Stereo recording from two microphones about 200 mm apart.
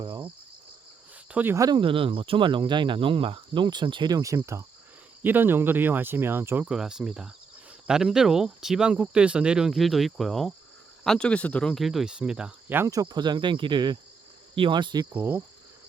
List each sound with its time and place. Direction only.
0.0 s cricket: 25° right (ahead or behind)
1.3 s speech: 10° right (ahead or behind)
15.1 s speech: 10° right (ahead or behind)